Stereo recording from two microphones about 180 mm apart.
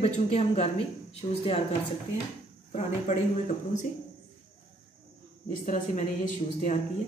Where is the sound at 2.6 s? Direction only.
40° left (ahead or behind).